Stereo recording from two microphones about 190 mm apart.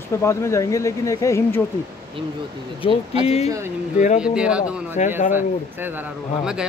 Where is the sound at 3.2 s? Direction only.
35° left (ahead or behind).